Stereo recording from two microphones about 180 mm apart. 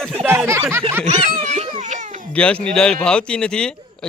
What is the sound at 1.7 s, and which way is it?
Baby cry, 40° right (ahead or behind).